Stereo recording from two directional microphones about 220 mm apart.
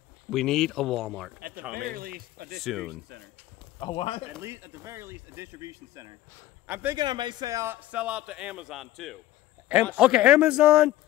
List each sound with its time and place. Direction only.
0.3 s a man's voice: centre (ahead or behind)
1.7 s speech: 40° right (ahead or behind)
2.6 s a man's voice: centre (ahead or behind)
3.8 s speech: 25° left (ahead or behind)
4.4 s speech: 10° right (ahead or behind)
7.0 s a man's voice: 20° right (ahead or behind); by 10.9 s 5° right (ahead or behind)